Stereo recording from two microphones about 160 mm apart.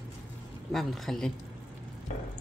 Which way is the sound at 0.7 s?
Centre (ahead or behind).